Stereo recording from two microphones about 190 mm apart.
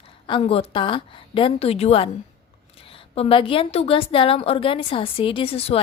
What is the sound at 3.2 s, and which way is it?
A woman's voice, 30° left (ahead or behind).